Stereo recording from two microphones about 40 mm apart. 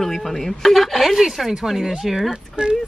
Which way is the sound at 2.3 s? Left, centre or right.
Right.